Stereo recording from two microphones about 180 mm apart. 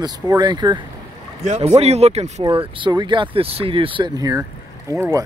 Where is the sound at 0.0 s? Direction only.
25° right (ahead or behind).